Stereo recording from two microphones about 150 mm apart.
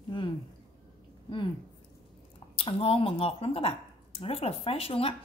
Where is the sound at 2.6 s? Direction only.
40° left (ahead or behind).